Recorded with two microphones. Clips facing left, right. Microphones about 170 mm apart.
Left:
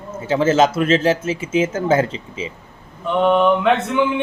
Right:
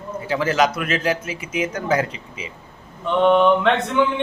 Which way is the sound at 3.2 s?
5° left (ahead or behind).